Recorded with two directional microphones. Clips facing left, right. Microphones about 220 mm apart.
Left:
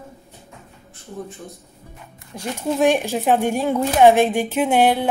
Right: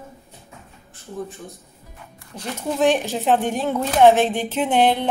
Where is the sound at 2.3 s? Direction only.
15° left (ahead or behind).